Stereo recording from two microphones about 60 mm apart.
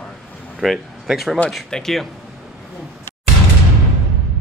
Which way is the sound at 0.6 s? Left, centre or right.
Centre.